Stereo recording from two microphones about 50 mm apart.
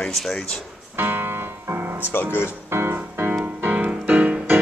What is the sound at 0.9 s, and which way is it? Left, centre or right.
Music, right.